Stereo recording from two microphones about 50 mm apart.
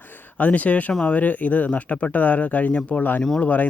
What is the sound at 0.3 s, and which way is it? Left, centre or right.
Speech, left.